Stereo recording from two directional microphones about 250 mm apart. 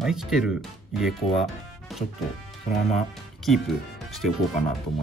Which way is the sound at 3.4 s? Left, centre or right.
Centre.